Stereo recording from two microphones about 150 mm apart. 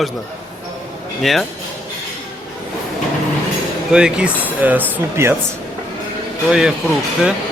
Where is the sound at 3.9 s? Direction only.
5° right (ahead or behind).